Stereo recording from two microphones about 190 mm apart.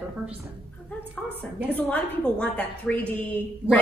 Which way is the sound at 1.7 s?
10° left (ahead or behind).